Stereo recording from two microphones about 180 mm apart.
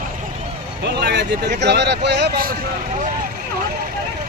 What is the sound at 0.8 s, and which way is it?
Speech, 65° right (ahead or behind).